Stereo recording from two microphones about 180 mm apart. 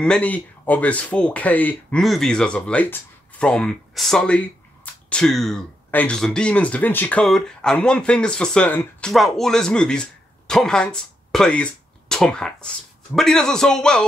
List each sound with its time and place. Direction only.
0.0 s speech: 5° left (ahead or behind)